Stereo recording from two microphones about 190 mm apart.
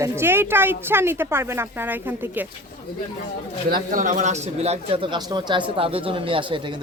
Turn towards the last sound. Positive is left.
turn(degrees=-25)  # may be behind; listen again after turning